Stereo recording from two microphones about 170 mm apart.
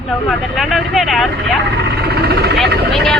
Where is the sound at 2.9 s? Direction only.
Centre (ahead or behind).